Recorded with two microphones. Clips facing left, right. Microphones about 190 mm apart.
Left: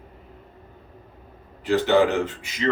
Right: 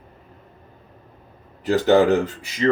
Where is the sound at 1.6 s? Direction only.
40° right (ahead or behind).